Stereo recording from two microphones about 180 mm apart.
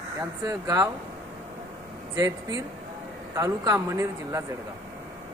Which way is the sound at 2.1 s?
20° right (ahead or behind).